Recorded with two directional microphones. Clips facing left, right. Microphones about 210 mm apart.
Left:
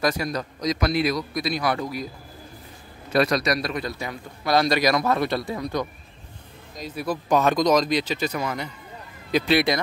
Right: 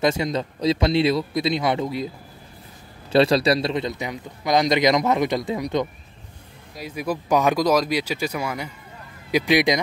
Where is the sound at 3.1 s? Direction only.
30° right (ahead or behind).